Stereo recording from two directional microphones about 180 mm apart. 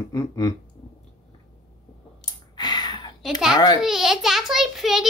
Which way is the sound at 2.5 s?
25° left (ahead or behind).